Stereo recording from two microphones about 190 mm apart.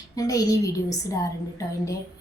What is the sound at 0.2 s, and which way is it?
Speech, 20° left (ahead or behind).